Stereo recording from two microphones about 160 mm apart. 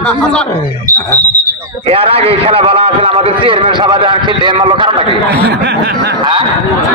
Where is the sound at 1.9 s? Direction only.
40° right (ahead or behind).